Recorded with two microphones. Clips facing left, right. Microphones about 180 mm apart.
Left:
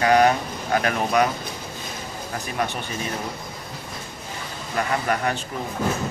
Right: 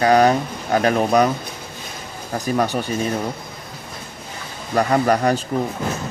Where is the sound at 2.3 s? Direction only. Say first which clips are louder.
Right 8 dB; 35° right (ahead or behind).